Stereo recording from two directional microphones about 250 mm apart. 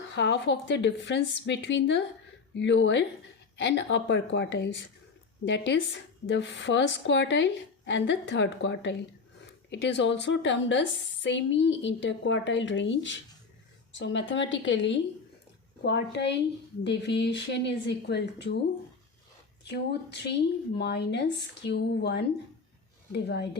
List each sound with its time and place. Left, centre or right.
0.1 s a woman's voice: left
19.6 s a woman's voice: left